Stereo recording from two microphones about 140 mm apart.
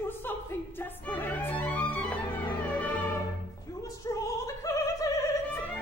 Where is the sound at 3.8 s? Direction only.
20° left (ahead or behind).